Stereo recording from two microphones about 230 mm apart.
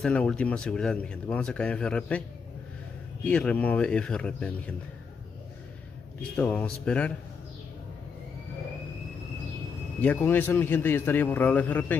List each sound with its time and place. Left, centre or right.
0.0 s speech: centre
3.3 s speech: centre
6.3 s speech: centre
10.0 s a man's voice: centre